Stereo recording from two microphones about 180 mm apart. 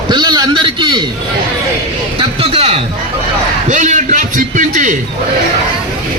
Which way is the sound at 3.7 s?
45° right (ahead or behind).